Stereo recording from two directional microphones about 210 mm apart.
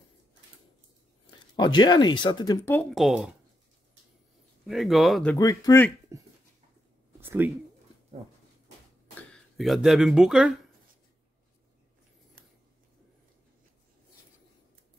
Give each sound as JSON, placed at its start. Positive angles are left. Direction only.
{"t": 1.6, "sound": "speech", "side_deg": 20}
{"t": 4.6, "sound": "speech", "side_deg": 0}
{"t": 5.4, "sound": "speech", "side_deg": 15}
{"t": 6.1, "sound": "a sound", "side_deg": -15}
{"t": 7.2, "sound": "speech", "side_deg": -10}
{"t": 9.3, "sound": "speech", "side_deg": 0}